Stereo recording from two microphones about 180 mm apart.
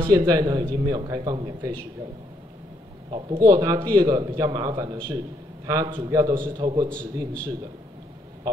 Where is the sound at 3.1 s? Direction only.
25° right (ahead or behind).